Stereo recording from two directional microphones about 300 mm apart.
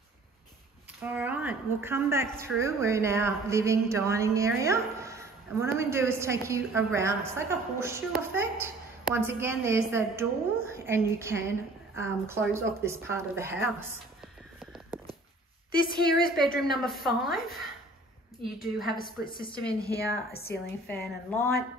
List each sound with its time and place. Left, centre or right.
1.0 s a woman's voice: centre
16.5 s a woman's voice: centre
18.6 s a woman's voice: centre
18.9 s a woman's voice: centre
19.6 s a woman's voice: centre
20.5 s a woman's voice: left
20.8 s a woman's voice: centre